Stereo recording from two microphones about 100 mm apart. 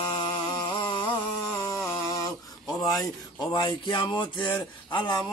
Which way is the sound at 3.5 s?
50° left (ahead or behind).